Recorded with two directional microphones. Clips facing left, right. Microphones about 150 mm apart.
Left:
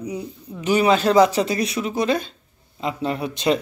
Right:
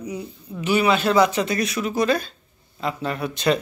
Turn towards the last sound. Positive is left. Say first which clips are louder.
# left 1 dB
turn(degrees=25)  # may be behind; listen again after turning